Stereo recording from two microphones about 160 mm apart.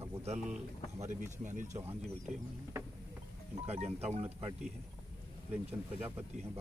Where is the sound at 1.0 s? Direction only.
50° right (ahead or behind).